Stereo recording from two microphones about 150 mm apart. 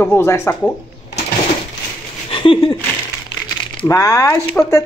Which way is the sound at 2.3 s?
35° left (ahead or behind).